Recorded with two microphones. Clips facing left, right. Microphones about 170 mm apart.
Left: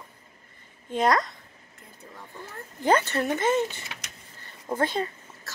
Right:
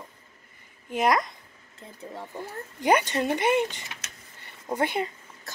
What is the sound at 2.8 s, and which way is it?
Speech, 15° right (ahead or behind).